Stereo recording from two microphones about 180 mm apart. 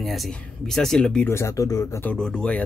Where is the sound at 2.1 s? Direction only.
5° left (ahead or behind).